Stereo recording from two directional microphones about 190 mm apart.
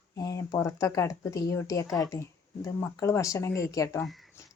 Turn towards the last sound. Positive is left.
turn(degrees=15)  # may be behind; listen again after turning